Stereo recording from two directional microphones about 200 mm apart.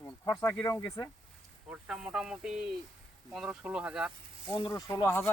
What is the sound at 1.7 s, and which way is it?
Speech, 5° right (ahead or behind).